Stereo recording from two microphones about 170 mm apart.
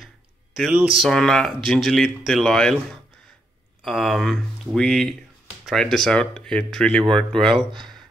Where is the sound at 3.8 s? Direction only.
Centre (ahead or behind).